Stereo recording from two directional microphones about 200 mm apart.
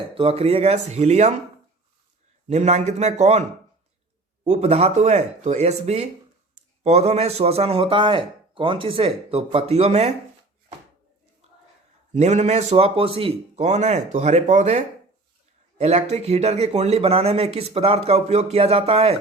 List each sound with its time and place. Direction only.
0.1 s speech: 30° right (ahead or behind)
2.5 s speech: 35° right (ahead or behind)
4.4 s a man's voice: 35° right (ahead or behind)
12.1 s speech: 35° right (ahead or behind)
15.8 s speech: 30° right (ahead or behind)